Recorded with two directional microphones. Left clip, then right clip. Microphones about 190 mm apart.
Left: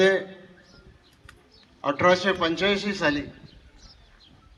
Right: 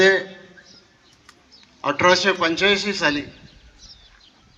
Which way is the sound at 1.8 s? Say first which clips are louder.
Right 4 dB; 70° left (ahead or behind).